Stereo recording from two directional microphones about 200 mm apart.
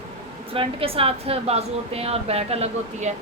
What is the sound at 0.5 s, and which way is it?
A woman's voice, 30° right (ahead or behind).